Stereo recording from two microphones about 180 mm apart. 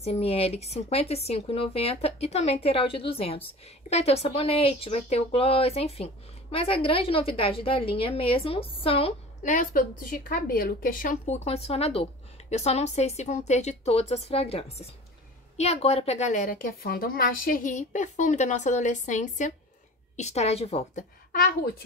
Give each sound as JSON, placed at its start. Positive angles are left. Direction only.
{"t": 0.0, "sound": "a woman's voice", "side_deg": 35}
{"t": 11.4, "sound": "a woman's voice", "side_deg": 35}